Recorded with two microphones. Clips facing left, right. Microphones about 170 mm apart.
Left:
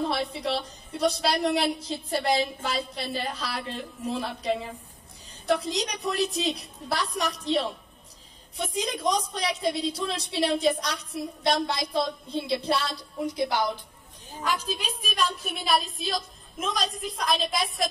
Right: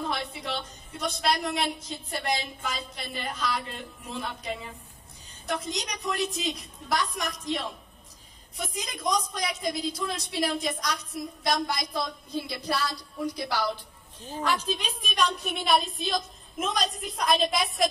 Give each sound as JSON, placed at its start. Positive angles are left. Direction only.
{"t": 0.1, "sound": "a woman's voice", "side_deg": 35}
{"t": 14.4, "sound": "a woman's voice", "side_deg": 10}